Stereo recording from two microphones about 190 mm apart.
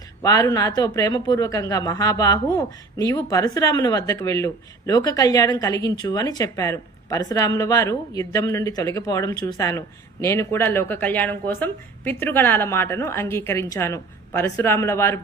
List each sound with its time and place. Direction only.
0.2 s speech: 15° left (ahead or behind)